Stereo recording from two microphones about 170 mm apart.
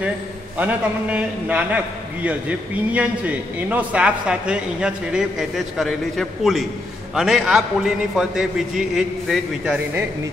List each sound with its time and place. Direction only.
0.6 s a man's voice: 10° right (ahead or behind)